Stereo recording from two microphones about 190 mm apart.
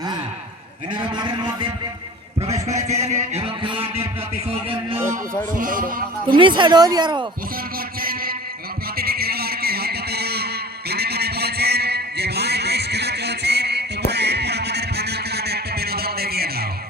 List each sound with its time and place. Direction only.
0.9 s speech: 25° right (ahead or behind)
2.6 s music: 35° right (ahead or behind)
5.5 s speech: 45° right (ahead or behind)
6.2 s speech: 25° right (ahead or behind)
8.0 s a sound: 50° right (ahead or behind)